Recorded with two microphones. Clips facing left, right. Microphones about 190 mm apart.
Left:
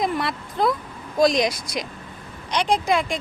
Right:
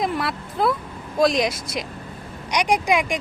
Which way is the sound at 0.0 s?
5° right (ahead or behind).